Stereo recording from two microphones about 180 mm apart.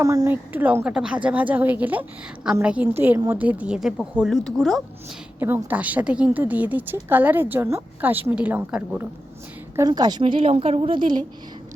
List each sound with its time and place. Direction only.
0.0 s a woman's voice: 20° right (ahead or behind); by 4.8 s centre (ahead or behind)
5.4 s speech: 10° right (ahead or behind)
9.7 s a woman's voice: 20° right (ahead or behind)